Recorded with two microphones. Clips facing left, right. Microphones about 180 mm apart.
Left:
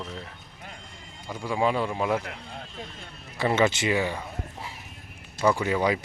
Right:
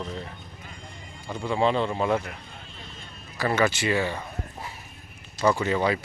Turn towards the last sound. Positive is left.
turn(degrees=10)  # may be behind; listen again after turning